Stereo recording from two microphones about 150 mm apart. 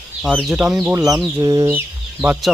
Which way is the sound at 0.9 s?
25° right (ahead or behind).